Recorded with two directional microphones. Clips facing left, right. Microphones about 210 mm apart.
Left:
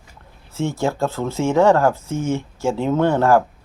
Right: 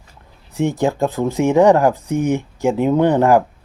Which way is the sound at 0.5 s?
15° right (ahead or behind).